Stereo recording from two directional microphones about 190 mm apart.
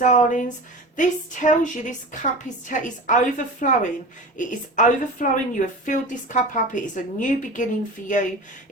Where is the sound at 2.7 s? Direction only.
40° left (ahead or behind).